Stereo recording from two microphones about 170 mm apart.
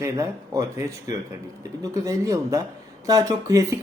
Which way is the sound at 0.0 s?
20° right (ahead or behind).